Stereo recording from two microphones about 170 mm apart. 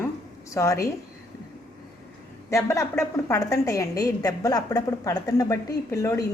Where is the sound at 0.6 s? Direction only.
15° left (ahead or behind).